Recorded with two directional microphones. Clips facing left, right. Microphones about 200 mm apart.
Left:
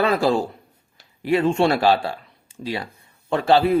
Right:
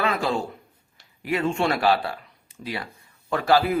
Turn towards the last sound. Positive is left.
turn(degrees=25)  # may be behind; listen again after turning